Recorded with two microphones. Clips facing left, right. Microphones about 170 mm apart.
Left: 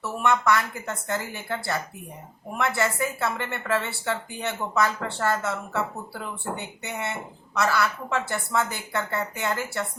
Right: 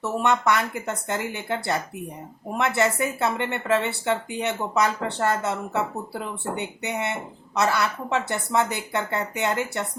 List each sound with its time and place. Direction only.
0.0 s speech: 20° right (ahead or behind)